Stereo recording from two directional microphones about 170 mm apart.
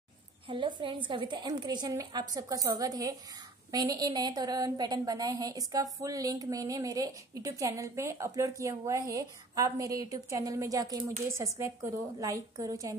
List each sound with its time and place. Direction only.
0.5 s a woman's voice: 30° right (ahead or behind)